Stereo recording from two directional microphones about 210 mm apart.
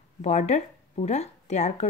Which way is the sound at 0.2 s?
35° left (ahead or behind).